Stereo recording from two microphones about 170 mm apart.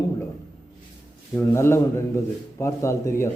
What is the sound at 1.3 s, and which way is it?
Speech, 15° left (ahead or behind).